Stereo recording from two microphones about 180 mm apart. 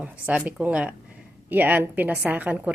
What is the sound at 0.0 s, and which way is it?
Speech, 5° right (ahead or behind).